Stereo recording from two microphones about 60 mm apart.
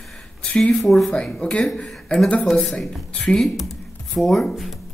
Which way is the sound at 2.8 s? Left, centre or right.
Centre.